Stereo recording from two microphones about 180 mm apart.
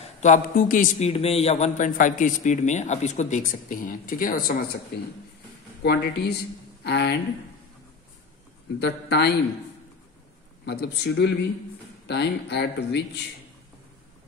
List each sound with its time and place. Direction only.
0.0 s a man's voice: 40° left (ahead or behind)
5.8 s speech: 65° left (ahead or behind)
8.7 s speech: 70° left (ahead or behind)
10.6 s speech: 65° left (ahead or behind)